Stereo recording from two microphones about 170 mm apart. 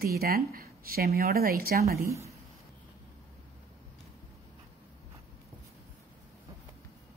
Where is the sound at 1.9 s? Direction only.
15° right (ahead or behind).